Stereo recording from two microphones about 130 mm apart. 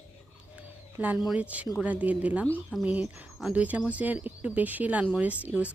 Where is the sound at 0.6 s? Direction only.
10° right (ahead or behind).